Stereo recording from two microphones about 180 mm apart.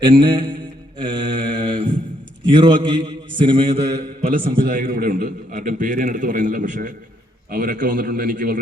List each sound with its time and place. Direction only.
0.0 s a man's voice: 25° right (ahead or behind)
0.9 s mantra: 25° right (ahead or behind)
2.5 s a man's voice: 25° right (ahead or behind)
4.2 s a man's voice: 50° right (ahead or behind)